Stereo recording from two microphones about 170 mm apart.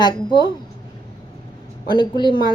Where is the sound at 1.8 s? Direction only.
25° left (ahead or behind).